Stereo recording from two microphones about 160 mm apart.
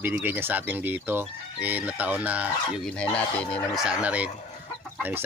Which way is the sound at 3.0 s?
5° left (ahead or behind).